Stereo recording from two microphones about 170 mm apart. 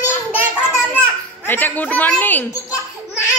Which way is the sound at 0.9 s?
10° left (ahead or behind).